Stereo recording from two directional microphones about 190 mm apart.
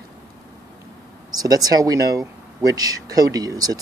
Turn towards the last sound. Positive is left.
turn(degrees=-20)  # may be behind; listen again after turning